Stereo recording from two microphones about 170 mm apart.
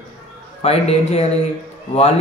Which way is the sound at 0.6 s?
35° left (ahead or behind).